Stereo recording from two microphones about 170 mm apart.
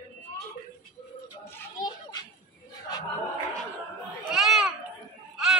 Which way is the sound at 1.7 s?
25° left (ahead or behind).